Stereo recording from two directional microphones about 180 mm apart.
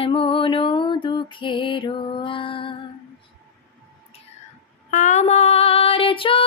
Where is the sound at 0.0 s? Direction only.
30° left (ahead or behind).